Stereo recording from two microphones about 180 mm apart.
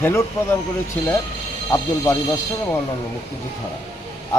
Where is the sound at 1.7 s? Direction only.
15° left (ahead or behind).